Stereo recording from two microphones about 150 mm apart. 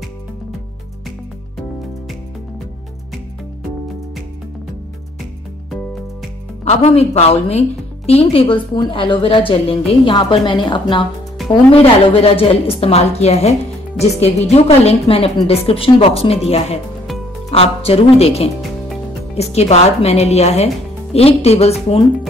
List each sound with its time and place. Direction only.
6.6 s a woman's voice: 45° left (ahead or behind)